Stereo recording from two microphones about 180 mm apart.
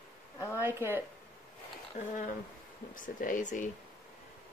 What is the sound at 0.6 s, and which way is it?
Speech, 10° right (ahead or behind).